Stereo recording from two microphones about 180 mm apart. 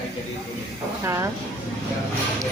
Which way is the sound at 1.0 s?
15° right (ahead or behind).